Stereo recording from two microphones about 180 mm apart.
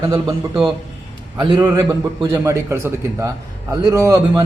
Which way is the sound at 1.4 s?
25° right (ahead or behind).